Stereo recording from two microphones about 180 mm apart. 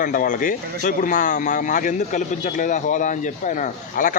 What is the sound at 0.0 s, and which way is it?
Speech, 50° left (ahead or behind).